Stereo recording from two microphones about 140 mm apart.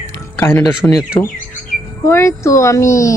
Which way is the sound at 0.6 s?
25° left (ahead or behind).